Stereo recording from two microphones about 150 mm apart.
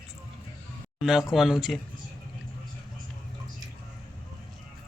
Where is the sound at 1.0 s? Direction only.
5° right (ahead or behind).